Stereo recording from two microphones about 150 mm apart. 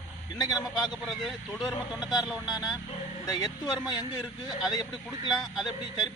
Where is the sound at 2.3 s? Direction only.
5° right (ahead or behind).